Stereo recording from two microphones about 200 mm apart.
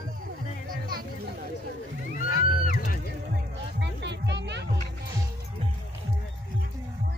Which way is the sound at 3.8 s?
60° right (ahead or behind).